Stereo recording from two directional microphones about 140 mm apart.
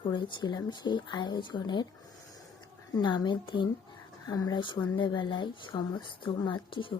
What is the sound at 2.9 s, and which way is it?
A woman's voice, 30° left (ahead or behind).